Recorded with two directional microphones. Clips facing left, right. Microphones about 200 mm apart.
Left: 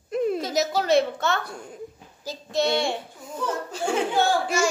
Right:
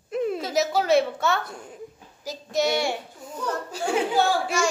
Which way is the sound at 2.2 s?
30° left (ahead or behind).